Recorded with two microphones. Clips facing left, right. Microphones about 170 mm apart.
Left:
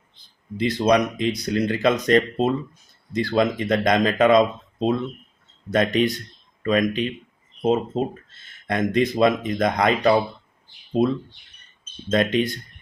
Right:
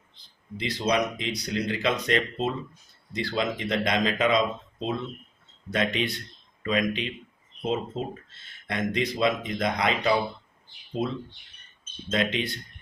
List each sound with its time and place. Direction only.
0.5 s speech: 50° left (ahead or behind)
12.1 s speech: 45° left (ahead or behind)